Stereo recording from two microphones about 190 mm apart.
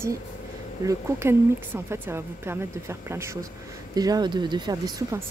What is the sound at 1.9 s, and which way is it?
A woman's voice, 15° right (ahead or behind).